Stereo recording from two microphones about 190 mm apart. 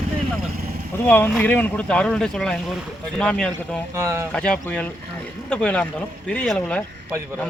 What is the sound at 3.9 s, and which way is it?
Speech, 15° right (ahead or behind).